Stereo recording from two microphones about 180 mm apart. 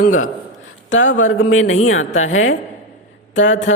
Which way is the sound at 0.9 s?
90° left.